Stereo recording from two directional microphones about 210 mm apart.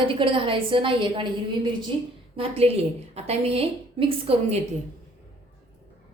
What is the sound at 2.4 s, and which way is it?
A woman's voice, 30° right (ahead or behind).